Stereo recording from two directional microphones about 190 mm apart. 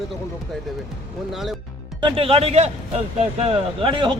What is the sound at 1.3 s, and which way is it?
Speech, centre (ahead or behind).